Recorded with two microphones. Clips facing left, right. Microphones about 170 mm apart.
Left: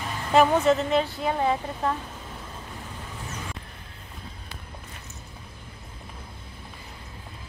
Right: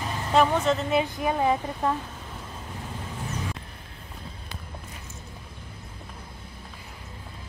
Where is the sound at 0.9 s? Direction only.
15° right (ahead or behind).